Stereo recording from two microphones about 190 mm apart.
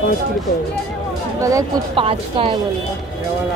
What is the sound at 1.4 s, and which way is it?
Speech, 15° right (ahead or behind).